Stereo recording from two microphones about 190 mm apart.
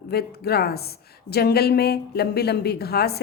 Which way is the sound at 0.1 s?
55° left (ahead or behind).